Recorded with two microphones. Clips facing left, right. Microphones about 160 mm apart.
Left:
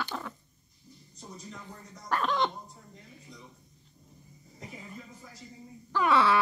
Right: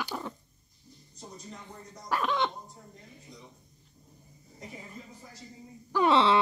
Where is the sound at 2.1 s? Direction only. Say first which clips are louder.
Even; centre (ahead or behind).